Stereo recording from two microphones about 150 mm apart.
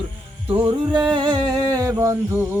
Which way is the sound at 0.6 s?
35° right (ahead or behind).